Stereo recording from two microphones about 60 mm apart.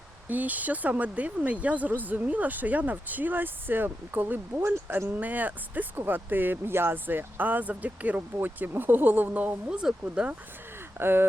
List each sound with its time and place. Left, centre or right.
0.3 s speech: right
4.6 s speech: right
5.0 s speech: right
11.0 s speech: right